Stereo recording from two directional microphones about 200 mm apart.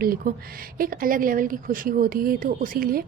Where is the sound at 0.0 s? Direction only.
45° right (ahead or behind).